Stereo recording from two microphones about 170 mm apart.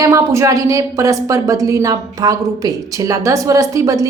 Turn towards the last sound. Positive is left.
turn(degrees=-20)  # may be behind; listen again after turning